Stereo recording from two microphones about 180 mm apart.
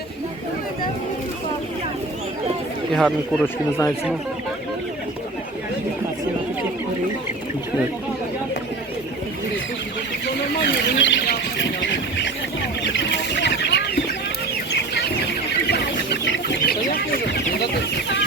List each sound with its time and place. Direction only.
2.9 s speech: centre (ahead or behind)
3.4 s speech: 10° left (ahead or behind)
10.6 s bird: 85° left
12.9 s chicken: 80° left
16.2 s chicken: 65° left (ahead or behind)